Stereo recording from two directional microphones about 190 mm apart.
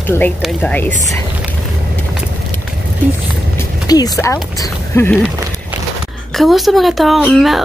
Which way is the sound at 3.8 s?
20° left (ahead or behind).